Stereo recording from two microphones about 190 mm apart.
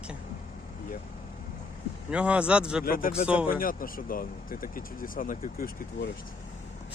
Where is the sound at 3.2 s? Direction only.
5° right (ahead or behind).